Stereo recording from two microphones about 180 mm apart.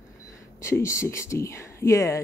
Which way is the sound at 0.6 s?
15° left (ahead or behind).